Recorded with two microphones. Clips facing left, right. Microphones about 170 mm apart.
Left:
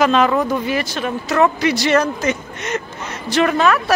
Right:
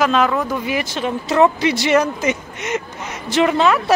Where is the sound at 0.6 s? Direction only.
20° right (ahead or behind).